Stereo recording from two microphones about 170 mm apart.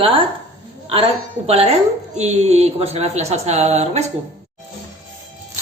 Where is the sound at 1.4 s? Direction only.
35° right (ahead or behind).